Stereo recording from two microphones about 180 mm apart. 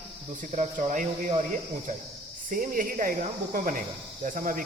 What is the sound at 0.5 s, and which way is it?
Speech, 40° right (ahead or behind).